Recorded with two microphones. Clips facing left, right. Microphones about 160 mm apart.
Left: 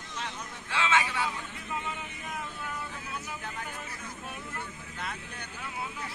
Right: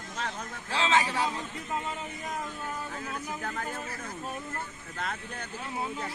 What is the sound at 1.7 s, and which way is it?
Vehicle, 35° right (ahead or behind).